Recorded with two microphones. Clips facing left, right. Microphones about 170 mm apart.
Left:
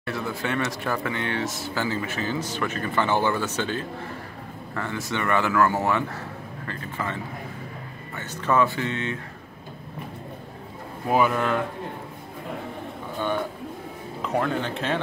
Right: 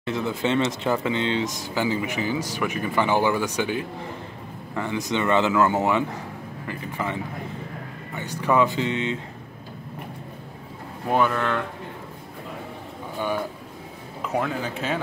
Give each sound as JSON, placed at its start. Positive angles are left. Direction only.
{"t": 0.0, "sound": "speech", "side_deg": -20}
{"t": 8.2, "sound": "speech", "side_deg": -15}
{"t": 11.1, "sound": "speech", "side_deg": 5}
{"t": 14.2, "sound": "a man's voice", "side_deg": -5}